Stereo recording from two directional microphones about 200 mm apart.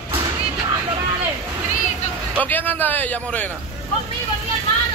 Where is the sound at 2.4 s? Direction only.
10° left (ahead or behind).